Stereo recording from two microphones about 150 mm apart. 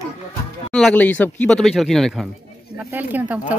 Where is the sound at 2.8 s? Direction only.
10° right (ahead or behind).